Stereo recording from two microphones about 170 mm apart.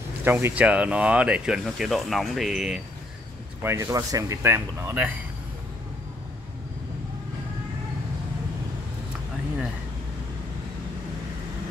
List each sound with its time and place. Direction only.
0.2 s speech: 10° right (ahead or behind)
3.6 s speech: 20° right (ahead or behind)